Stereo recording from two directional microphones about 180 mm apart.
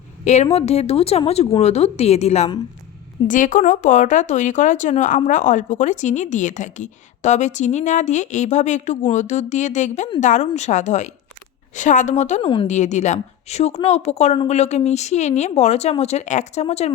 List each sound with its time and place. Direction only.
0.5 s speech: 35° left (ahead or behind)